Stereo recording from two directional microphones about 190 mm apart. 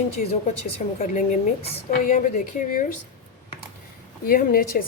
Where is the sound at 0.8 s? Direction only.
40° left (ahead or behind).